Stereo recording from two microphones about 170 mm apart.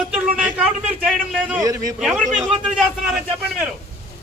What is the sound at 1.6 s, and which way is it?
Speech, 20° right (ahead or behind).